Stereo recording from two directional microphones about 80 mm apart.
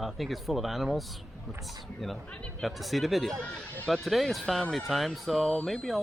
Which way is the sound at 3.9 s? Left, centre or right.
Centre.